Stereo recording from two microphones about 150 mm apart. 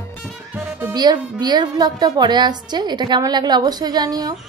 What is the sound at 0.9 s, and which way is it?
A woman's voice, 30° right (ahead or behind).